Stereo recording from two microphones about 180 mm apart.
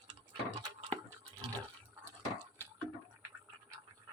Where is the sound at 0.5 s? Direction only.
20° right (ahead or behind).